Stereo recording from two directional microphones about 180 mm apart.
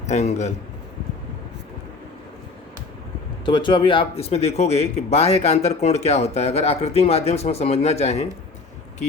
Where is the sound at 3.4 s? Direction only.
25° left (ahead or behind).